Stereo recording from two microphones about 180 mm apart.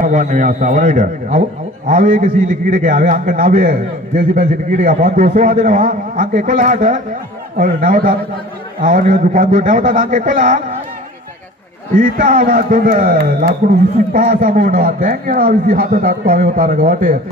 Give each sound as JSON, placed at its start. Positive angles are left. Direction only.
{"t": 0.0, "sound": "a man's voice", "side_deg": -45}
{"t": 11.9, "sound": "a man's voice", "side_deg": -50}